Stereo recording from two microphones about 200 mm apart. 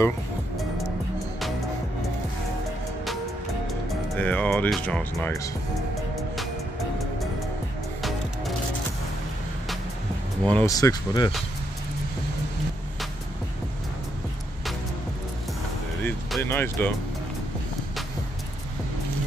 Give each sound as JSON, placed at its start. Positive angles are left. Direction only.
{"t": 3.9, "sound": "speech", "side_deg": 5}
{"t": 5.9, "sound": "music", "side_deg": 0}
{"t": 10.4, "sound": "speech", "side_deg": 5}
{"t": 10.7, "sound": "speech", "side_deg": 20}
{"t": 16.0, "sound": "speech", "side_deg": 10}